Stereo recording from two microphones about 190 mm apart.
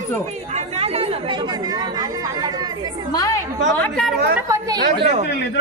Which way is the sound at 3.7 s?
5° left (ahead or behind).